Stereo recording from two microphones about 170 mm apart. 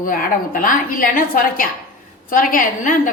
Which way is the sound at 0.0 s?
55° left (ahead or behind).